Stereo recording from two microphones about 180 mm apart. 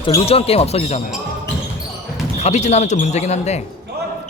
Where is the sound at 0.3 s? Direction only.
35° left (ahead or behind).